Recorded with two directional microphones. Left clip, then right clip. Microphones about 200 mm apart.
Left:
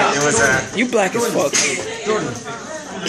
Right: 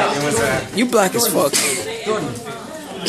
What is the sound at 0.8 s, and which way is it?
Speech, 20° right (ahead or behind).